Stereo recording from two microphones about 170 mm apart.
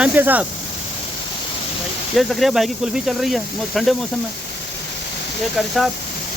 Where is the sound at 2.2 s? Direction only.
Centre (ahead or behind).